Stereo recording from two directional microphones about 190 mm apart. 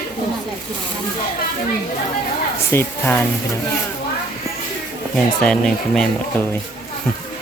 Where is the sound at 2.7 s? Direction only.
10° left (ahead or behind).